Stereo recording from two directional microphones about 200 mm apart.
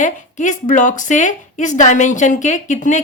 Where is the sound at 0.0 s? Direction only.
40° left (ahead or behind).